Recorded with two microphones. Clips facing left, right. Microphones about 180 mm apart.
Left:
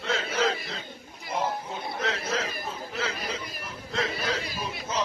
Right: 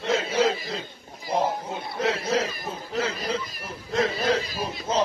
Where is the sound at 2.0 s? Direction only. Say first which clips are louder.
Right 7 dB; 30° right (ahead or behind).